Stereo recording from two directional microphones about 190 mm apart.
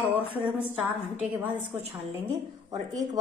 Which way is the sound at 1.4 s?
10° right (ahead or behind).